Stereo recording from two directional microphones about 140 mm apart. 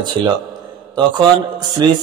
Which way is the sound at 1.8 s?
30° right (ahead or behind).